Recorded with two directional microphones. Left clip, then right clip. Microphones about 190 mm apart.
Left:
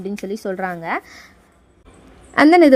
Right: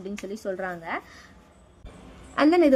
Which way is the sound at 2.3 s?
40° left (ahead or behind).